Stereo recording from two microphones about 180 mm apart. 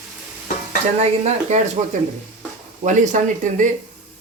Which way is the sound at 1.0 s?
35° right (ahead or behind).